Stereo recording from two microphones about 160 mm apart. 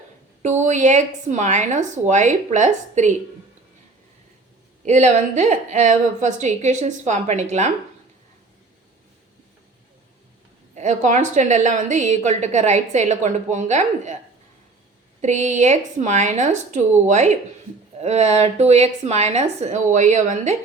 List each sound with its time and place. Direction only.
0.4 s a woman's voice: 50° right (ahead or behind)
4.9 s a woman's voice: 45° right (ahead or behind)
10.8 s a woman's voice: 50° right (ahead or behind)
15.2 s a woman's voice: 45° right (ahead or behind)